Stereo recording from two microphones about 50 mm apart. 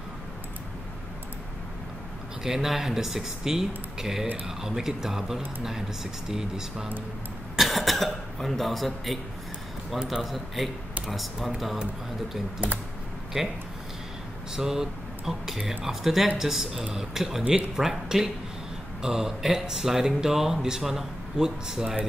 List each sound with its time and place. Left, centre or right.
2.4 s speech: centre
10.2 s speech: centre
13.4 s speech: centre